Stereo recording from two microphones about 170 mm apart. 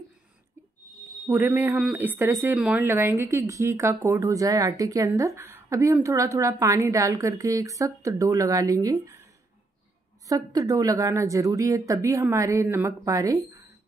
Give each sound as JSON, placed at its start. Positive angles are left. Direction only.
{"t": 1.2, "sound": "a woman's voice", "side_deg": -15}